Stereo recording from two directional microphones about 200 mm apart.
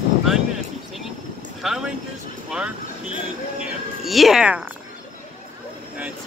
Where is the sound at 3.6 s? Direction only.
Centre (ahead or behind).